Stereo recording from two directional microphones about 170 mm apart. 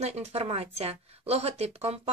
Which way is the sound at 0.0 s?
40° right (ahead or behind).